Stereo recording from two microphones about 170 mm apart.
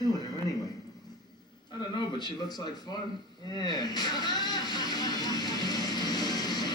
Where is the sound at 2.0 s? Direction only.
25° left (ahead or behind).